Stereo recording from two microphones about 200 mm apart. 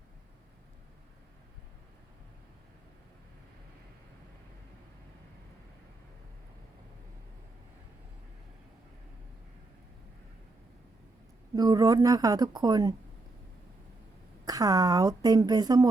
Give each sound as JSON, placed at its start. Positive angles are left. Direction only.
{"t": 11.5, "sound": "speech", "side_deg": -20}
{"t": 14.4, "sound": "speech", "side_deg": -20}